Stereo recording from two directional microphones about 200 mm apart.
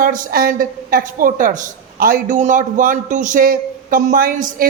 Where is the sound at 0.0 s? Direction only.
45° right (ahead or behind).